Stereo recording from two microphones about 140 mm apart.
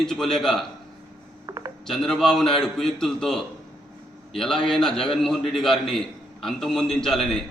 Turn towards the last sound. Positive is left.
turn(degrees=5)  # may be behind; listen again after turning